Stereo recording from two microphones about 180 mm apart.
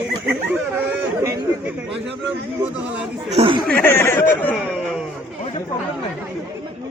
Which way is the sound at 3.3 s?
35° right (ahead or behind).